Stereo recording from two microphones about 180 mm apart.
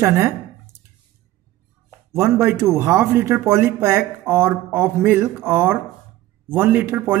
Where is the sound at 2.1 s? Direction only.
15° right (ahead or behind).